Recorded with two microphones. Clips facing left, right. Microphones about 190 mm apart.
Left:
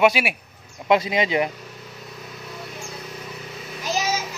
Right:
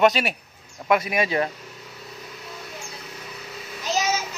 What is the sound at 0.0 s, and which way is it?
Speech, 10° left (ahead or behind).